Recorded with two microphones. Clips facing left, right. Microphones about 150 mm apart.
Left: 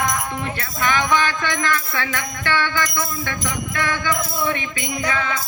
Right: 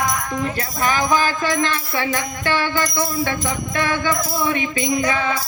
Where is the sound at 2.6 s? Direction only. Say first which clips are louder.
Right 2 dB; 40° right (ahead or behind).